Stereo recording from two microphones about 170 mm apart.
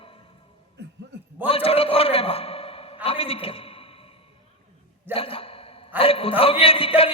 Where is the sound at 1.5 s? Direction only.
35° left (ahead or behind).